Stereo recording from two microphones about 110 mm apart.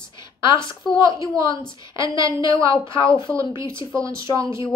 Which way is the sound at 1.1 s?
30° right (ahead or behind).